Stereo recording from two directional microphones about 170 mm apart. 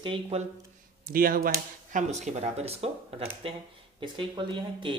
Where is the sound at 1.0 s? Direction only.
60° right (ahead or behind).